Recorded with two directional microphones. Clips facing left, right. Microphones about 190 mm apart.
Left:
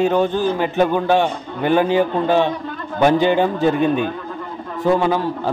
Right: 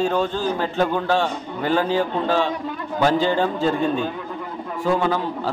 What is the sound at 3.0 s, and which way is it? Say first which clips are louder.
A man's voice: left 4 dB; 20° left (ahead or behind).